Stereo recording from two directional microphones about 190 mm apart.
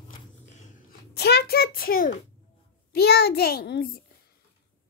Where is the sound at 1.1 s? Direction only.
60° left (ahead or behind).